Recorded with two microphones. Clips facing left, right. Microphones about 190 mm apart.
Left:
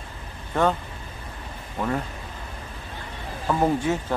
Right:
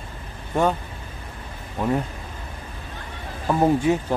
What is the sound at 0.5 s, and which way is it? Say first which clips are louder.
Speech: right 1 dB; 10° right (ahead or behind).